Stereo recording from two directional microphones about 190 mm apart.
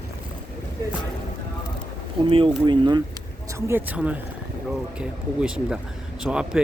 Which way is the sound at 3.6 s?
15° right (ahead or behind).